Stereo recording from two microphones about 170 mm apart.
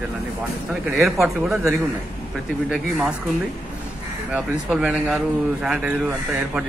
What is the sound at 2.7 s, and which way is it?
Speech, 5° right (ahead or behind).